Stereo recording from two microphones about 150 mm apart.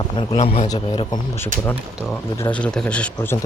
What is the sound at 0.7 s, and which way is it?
Speech, 30° left (ahead or behind).